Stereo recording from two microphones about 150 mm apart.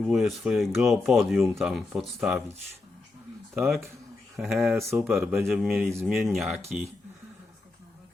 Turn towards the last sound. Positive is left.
turn(degrees=0)  # may be behind; listen again after turning